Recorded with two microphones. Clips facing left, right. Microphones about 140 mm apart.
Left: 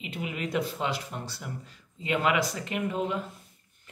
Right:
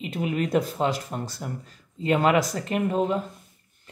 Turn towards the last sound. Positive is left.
turn(degrees=-40)  # may be behind; listen again after turning